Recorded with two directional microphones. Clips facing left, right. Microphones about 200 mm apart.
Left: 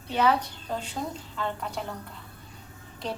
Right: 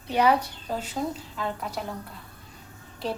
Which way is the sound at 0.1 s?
10° right (ahead or behind).